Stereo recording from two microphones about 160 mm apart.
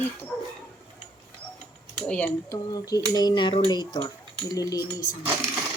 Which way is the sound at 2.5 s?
25° left (ahead or behind).